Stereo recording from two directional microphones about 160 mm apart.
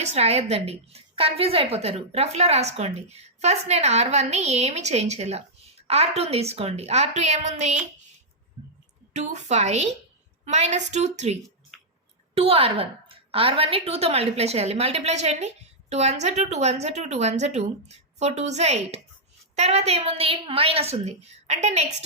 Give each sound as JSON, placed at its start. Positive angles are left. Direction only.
{"t": 0.0, "sound": "a woman's voice", "side_deg": -40}
{"t": 9.1, "sound": "a woman's voice", "side_deg": -45}